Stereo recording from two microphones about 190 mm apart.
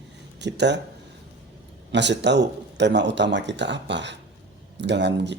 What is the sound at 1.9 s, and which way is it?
Speech, 65° right (ahead or behind).